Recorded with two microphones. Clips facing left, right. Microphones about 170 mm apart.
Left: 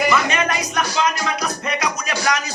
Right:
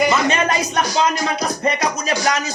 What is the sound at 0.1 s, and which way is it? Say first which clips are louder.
Music: right 2 dB; 30° right (ahead or behind).